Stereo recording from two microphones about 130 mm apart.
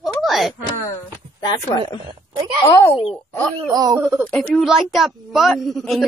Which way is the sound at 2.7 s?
20° left (ahead or behind).